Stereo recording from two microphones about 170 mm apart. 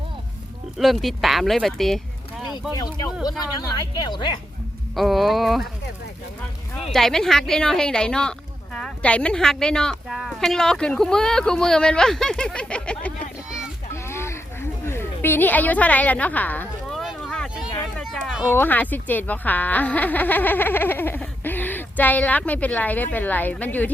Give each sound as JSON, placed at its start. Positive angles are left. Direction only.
{"t": 0.8, "sound": "speech", "side_deg": 0}
{"t": 2.7, "sound": "a woman's voice", "side_deg": 20}
{"t": 4.9, "sound": "speech", "side_deg": 0}
{"t": 6.9, "sound": "speech", "side_deg": 0}
{"t": 13.9, "sound": "a sound", "side_deg": 15}
{"t": 17.0, "sound": "boat", "side_deg": 0}
{"t": 17.9, "sound": "a sound", "side_deg": 0}
{"t": 18.4, "sound": "speech", "side_deg": 10}